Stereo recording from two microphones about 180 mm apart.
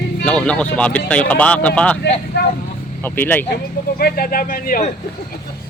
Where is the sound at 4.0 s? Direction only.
55° left (ahead or behind).